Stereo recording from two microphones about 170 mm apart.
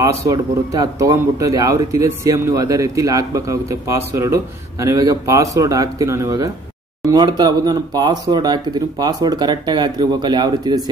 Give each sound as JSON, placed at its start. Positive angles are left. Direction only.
{"t": 0.0, "sound": "speech", "side_deg": -20}